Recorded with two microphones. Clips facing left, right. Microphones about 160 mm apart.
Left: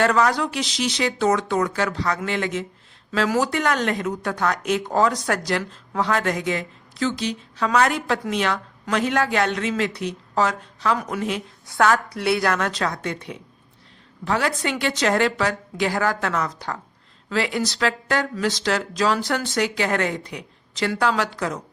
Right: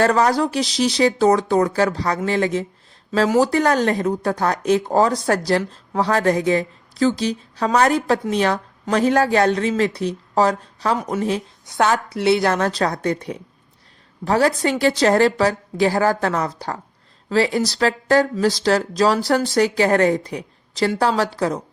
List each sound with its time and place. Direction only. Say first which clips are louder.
0.0 s speech: right 3 dB; 35° right (ahead or behind)
10.9 s speech: right 3 dB; 25° right (ahead or behind)
11.2 s speech: right 4 dB; 35° right (ahead or behind)
11.6 s speech: even; 20° right (ahead or behind)